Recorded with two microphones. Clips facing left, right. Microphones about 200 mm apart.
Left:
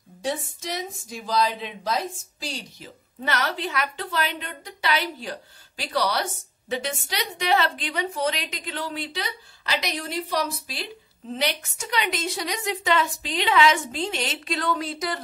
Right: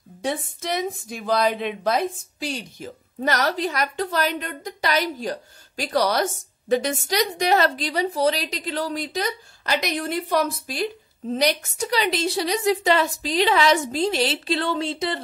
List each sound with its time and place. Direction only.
0.2 s a woman's voice: 55° right (ahead or behind)
11.3 s a woman's voice: 40° right (ahead or behind)